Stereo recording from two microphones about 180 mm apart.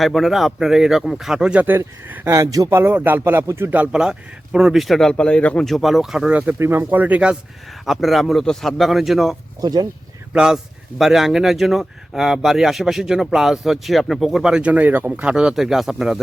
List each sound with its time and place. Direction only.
0.0 s speech: centre (ahead or behind)
9.6 s speech: 20° right (ahead or behind)
10.3 s speech: 5° right (ahead or behind)